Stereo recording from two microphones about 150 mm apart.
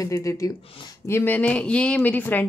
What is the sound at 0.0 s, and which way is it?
A woman's voice, 20° left (ahead or behind).